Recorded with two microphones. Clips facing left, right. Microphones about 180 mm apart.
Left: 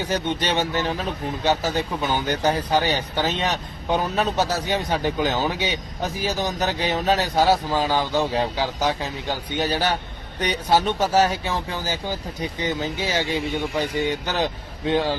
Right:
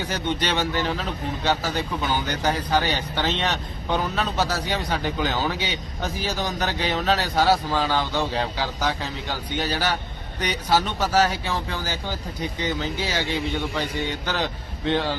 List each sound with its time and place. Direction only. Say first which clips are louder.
0.1 s a man's voice: left 2 dB; 15° left (ahead or behind)
14.3 s a man's voice: left 2 dB; 15° left (ahead or behind)